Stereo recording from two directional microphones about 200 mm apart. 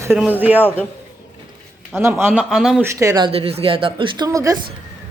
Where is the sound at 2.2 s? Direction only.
5° right (ahead or behind).